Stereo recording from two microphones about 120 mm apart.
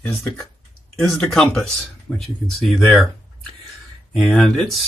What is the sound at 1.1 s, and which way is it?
Speech, 5° left (ahead or behind).